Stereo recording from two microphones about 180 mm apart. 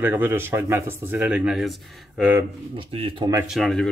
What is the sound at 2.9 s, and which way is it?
Speech, 30° right (ahead or behind).